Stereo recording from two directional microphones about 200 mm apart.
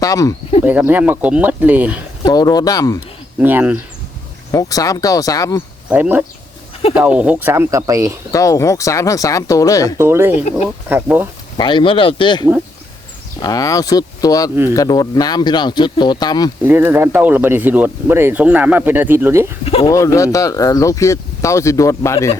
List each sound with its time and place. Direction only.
0.0 s speech: 15° left (ahead or behind)
0.6 s speech: 10° right (ahead or behind)
2.2 s speech: 20° left (ahead or behind)
3.3 s speech: 10° right (ahead or behind)
4.5 s speech: 15° left (ahead or behind)
5.9 s speech: 10° right (ahead or behind)
8.3 s speech: 15° left (ahead or behind)
10.0 s speech: 10° right (ahead or behind)
11.5 s speech: 25° left (ahead or behind)
16.6 s speech: 10° right (ahead or behind)
19.6 s speech: 25° left (ahead or behind)
19.9 s speech: 15° left (ahead or behind)